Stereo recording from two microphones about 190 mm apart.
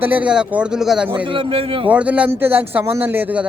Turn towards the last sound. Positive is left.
turn(degrees=-10)  # may be behind; listen again after turning